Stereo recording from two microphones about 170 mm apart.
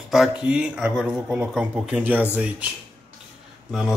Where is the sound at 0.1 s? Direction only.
5° right (ahead or behind).